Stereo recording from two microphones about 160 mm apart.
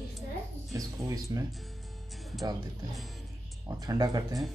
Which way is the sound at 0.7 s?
20° right (ahead or behind).